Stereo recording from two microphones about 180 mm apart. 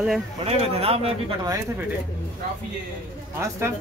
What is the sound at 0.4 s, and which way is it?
Speech, 35° right (ahead or behind).